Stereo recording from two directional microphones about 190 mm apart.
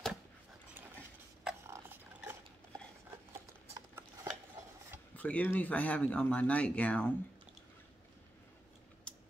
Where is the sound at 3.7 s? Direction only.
15° right (ahead or behind).